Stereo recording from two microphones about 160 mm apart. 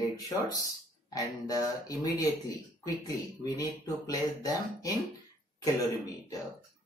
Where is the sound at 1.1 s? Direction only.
20° left (ahead or behind).